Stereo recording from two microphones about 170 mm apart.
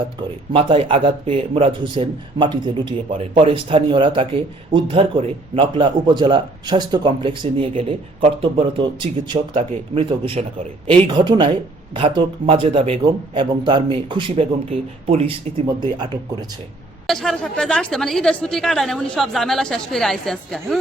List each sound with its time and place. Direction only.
0.2 s a man's voice: 30° right (ahead or behind)
17.1 s a woman's voice: centre (ahead or behind)